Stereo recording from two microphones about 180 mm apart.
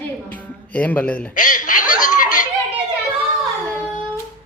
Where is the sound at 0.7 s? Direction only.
10° left (ahead or behind).